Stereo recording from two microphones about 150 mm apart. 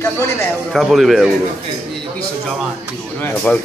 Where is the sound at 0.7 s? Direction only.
Centre (ahead or behind).